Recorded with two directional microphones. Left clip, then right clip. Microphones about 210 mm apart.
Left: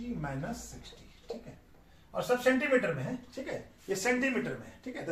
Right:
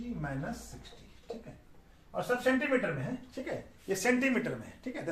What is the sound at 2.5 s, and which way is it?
Speech, 5° right (ahead or behind).